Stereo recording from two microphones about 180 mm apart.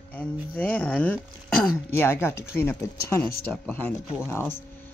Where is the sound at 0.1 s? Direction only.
10° left (ahead or behind).